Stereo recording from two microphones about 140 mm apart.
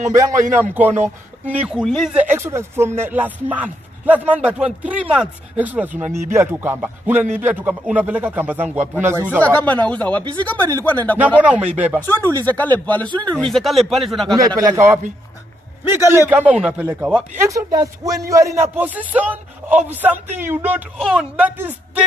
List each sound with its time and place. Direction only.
0.1 s a man's voice: 20° right (ahead or behind)
1.8 s speech: centre (ahead or behind)
2.2 s a man's voice: 15° right (ahead or behind)
9.4 s speech: 10° left (ahead or behind)
11.4 s a man's voice: 10° right (ahead or behind)
12.1 s speech: 15° left (ahead or behind)
13.1 s speech: 35° right (ahead or behind)
13.5 s speech: centre (ahead or behind)
14.3 s speech: 25° right (ahead or behind)
16.3 s a man's voice: 10° right (ahead or behind)
17.5 s a man's voice: 25° right (ahead or behind)